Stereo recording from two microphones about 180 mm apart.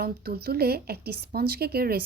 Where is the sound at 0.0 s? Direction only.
60° right (ahead or behind).